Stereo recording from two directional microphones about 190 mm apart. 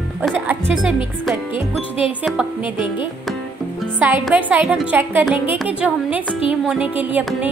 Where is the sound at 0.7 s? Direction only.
Centre (ahead or behind).